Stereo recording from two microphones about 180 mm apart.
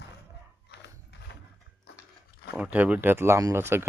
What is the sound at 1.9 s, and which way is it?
Biting, 70° left (ahead or behind).